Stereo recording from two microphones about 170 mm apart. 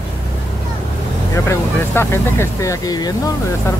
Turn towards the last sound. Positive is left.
turn(degrees=15)  # may be behind; listen again after turning